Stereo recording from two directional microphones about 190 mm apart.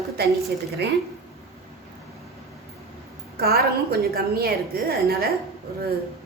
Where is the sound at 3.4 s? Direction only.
55° right (ahead or behind).